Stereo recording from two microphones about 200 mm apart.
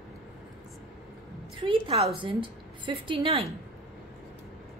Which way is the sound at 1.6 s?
25° right (ahead or behind).